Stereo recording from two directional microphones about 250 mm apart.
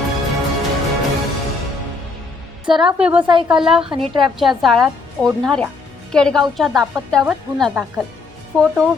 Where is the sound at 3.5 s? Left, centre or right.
Centre.